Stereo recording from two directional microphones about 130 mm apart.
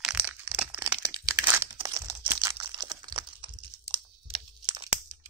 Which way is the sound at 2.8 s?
35° right (ahead or behind).